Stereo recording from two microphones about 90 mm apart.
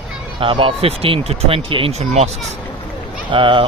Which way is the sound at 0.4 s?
80° right.